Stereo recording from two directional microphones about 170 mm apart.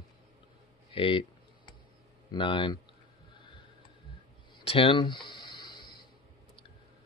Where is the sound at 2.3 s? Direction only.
30° left (ahead or behind).